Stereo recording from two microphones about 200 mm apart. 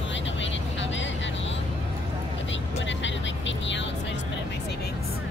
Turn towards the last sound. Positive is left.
turn(degrees=65)  # may be behind; listen again after turning